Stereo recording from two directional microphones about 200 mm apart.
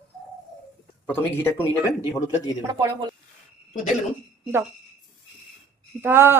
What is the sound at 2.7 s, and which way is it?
Speech, 20° right (ahead or behind).